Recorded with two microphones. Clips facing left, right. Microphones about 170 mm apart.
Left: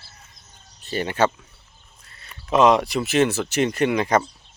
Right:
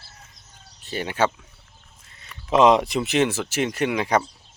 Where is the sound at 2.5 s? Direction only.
25° right (ahead or behind); by 4.3 s 5° right (ahead or behind).